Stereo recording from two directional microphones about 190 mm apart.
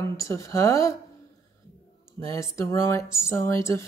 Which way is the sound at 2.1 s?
15° left (ahead or behind).